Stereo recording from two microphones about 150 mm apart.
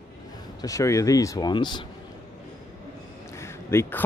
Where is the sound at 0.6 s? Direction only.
20° left (ahead or behind).